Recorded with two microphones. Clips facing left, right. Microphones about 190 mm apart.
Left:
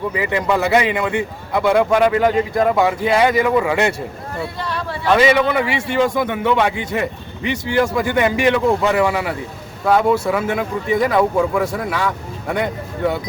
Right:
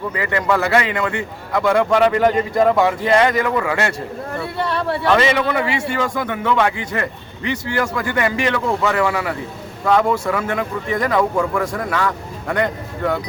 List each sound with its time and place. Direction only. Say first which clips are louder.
0.1 s a man's voice: right 1 dB; 15° left (ahead or behind)
4.5 s speech: right 5 dB; 60° right (ahead or behind)
5.1 s a man's voice: left 4 dB; 10° left (ahead or behind)